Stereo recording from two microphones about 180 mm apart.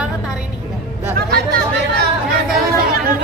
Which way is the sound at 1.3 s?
60° right (ahead or behind).